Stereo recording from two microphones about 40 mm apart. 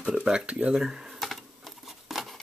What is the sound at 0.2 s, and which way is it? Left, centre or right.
Speech, right.